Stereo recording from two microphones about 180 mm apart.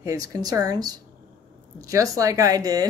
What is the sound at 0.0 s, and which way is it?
Speech, 20° right (ahead or behind).